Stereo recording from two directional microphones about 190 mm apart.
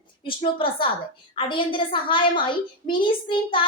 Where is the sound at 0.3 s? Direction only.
25° left (ahead or behind).